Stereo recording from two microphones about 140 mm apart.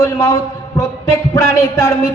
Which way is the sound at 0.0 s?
20° left (ahead or behind).